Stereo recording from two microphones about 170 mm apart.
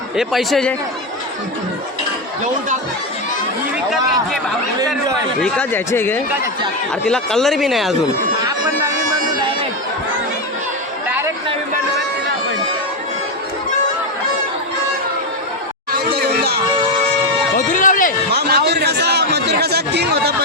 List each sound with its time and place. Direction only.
0.2 s speech: centre (ahead or behind)
5.4 s speech: 10° left (ahead or behind)
8.4 s bagpipes: 20° right (ahead or behind)
15.9 s chatter: 65° right (ahead or behind)
17.6 s a sound: 50° left (ahead or behind)
18.3 s a sound: 70° right (ahead or behind)